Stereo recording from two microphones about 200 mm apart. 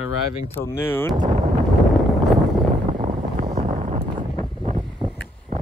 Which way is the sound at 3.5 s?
40° right (ahead or behind).